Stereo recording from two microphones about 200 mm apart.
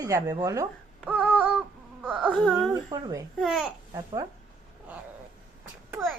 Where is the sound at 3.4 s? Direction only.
Centre (ahead or behind).